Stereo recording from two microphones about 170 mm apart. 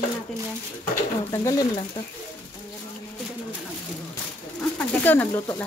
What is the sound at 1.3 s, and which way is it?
Speech, 20° left (ahead or behind).